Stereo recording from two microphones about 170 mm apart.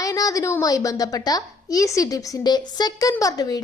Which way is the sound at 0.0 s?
20° left (ahead or behind).